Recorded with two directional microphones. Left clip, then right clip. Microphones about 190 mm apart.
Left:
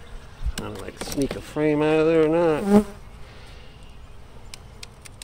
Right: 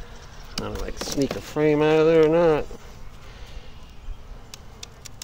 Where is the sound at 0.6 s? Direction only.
35° right (ahead or behind).